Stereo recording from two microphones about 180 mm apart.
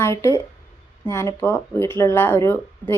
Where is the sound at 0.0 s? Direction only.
15° left (ahead or behind).